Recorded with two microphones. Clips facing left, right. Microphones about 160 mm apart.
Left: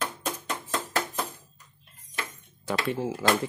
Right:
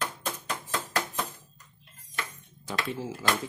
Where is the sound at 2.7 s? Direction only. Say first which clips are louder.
Left 5 dB; 60° left (ahead or behind).